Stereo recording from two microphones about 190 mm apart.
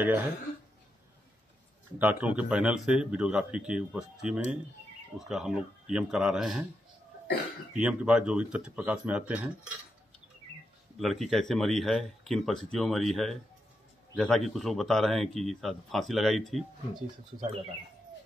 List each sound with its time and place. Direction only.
2.0 s speech: 10° right (ahead or behind)
7.7 s speech: 5° right (ahead or behind)
11.0 s speech: centre (ahead or behind)
17.4 s speech: 30° right (ahead or behind)